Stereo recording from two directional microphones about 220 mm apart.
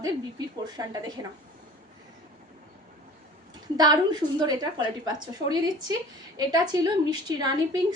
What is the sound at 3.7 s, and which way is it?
A woman's voice, 20° right (ahead or behind).